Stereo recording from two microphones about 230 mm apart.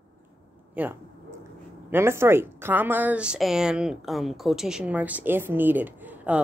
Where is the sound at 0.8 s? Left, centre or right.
Centre.